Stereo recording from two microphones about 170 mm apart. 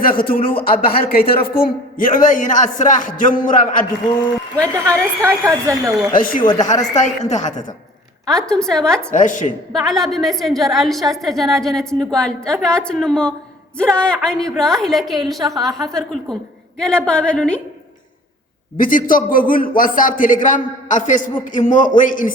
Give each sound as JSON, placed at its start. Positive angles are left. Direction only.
{"t": 0.0, "sound": "a man's voice", "side_deg": 55}
{"t": 4.6, "sound": "a woman's voice", "side_deg": -20}
{"t": 6.1, "sound": "a man's voice", "side_deg": 55}
{"t": 6.4, "sound": "speech", "side_deg": 25}
{"t": 6.9, "sound": "a man's voice", "side_deg": 45}
{"t": 8.3, "sound": "a woman's voice", "side_deg": 5}
{"t": 9.1, "sound": "a man's voice", "side_deg": 50}
{"t": 9.7, "sound": "a woman's voice", "side_deg": 0}
{"t": 15.4, "sound": "a woman's voice", "side_deg": -20}
{"t": 15.9, "sound": "a woman's voice", "side_deg": 0}
{"t": 18.8, "sound": "a man's voice", "side_deg": 55}